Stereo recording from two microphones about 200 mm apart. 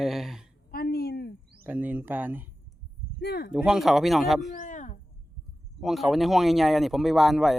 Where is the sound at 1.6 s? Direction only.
10° right (ahead or behind).